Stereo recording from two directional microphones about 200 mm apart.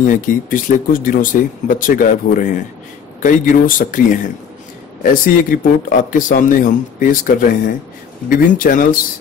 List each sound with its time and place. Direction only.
0.0 s speech: 40° left (ahead or behind)